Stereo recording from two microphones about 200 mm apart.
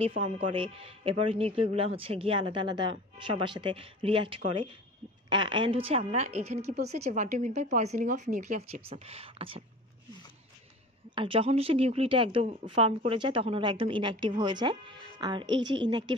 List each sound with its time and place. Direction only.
0.0 s speech: 30° right (ahead or behind)
11.1 s speech: 25° right (ahead or behind)